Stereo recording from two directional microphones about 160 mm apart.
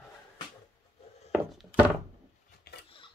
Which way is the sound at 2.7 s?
75° left (ahead or behind).